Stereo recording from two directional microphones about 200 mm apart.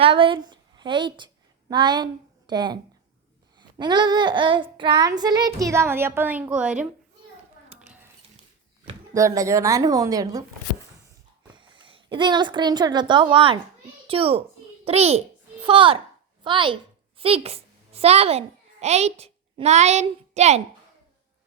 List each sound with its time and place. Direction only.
0.0 s a woman's voice: 25° right (ahead or behind)
1.7 s child singing: 20° right (ahead or behind); by 6.8 s 5° right (ahead or behind)
9.1 s a woman's voice: 15° right (ahead or behind)
11.5 s a woman's voice: 25° right (ahead or behind)
14.1 s child singing: 30° right (ahead or behind)
14.8 s a child's voice: 30° right (ahead or behind)
15.6 s child singing: 25° right (ahead or behind)
16.4 s a woman's voice: 25° right (ahead or behind)